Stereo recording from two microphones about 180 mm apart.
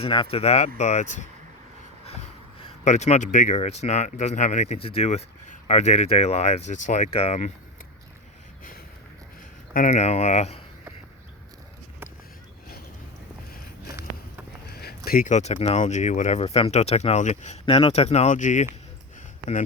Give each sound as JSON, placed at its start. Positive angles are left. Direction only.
{"t": 0.0, "sound": "speech", "side_deg": 30}
{"t": 9.7, "sound": "speech", "side_deg": 40}
{"t": 13.8, "sound": "a sound", "side_deg": -15}
{"t": 14.8, "sound": "speech", "side_deg": 55}